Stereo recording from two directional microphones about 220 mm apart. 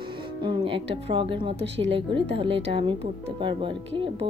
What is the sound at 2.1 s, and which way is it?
Speech, 55° right (ahead or behind).